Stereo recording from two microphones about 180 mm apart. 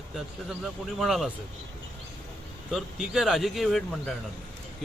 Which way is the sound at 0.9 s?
Centre (ahead or behind).